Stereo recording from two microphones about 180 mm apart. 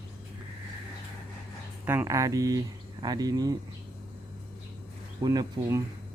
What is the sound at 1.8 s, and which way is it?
Speech, 15° right (ahead or behind).